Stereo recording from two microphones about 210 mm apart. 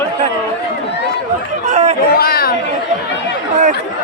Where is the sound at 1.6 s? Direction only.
35° right (ahead or behind).